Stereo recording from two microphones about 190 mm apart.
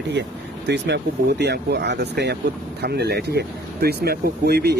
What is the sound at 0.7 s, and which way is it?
Speech, 60° right (ahead or behind).